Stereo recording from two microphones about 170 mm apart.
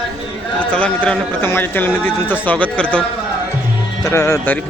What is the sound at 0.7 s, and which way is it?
Speech, 5° left (ahead or behind).